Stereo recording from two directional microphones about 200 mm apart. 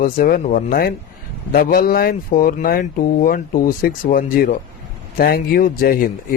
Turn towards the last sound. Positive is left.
turn(degrees=45)  # may be behind; listen again after turning